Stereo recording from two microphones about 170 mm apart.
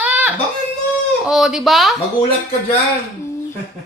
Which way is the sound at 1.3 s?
Centre (ahead or behind).